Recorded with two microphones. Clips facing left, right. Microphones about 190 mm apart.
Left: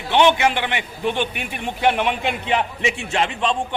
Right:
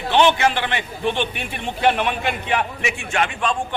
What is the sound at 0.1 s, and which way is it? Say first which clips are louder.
A man's voice: left 1 dB; 15° left (ahead or behind).